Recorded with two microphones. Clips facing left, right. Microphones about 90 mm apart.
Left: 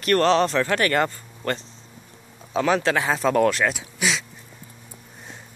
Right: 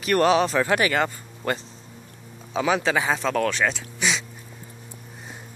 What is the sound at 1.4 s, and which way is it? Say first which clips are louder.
Speech: even; 15° right (ahead or behind).